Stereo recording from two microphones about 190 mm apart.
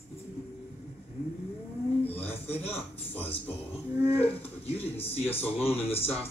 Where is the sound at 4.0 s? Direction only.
30° left (ahead or behind).